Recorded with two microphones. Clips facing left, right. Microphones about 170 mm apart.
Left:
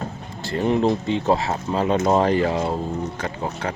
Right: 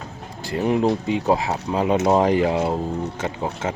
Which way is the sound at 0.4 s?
10° right (ahead or behind).